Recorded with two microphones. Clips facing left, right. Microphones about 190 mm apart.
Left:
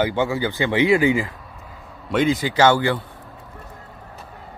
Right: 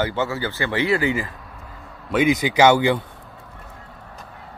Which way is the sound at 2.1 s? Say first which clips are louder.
Right 1 dB; 15° right (ahead or behind).